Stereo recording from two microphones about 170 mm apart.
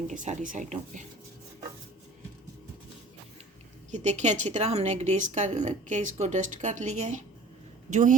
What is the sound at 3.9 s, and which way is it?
Speech, 45° right (ahead or behind).